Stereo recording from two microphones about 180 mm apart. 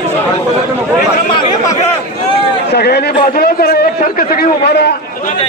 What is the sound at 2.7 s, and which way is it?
A man's voice, 65° left (ahead or behind).